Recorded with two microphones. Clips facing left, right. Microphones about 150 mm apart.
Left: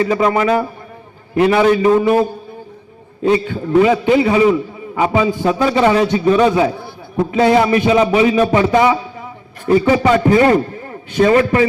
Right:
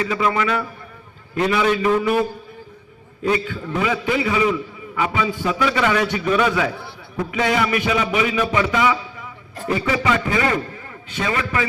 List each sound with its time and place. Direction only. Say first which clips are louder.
0.0 s a man's voice: left 6 dB; 40° left (ahead or behind)
3.2 s a man's voice: left 6 dB; 30° left (ahead or behind)